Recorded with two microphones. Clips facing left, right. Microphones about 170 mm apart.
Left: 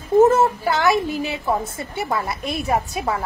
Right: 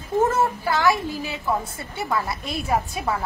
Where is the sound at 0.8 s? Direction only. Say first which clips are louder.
Left 3 dB; 20° left (ahead or behind).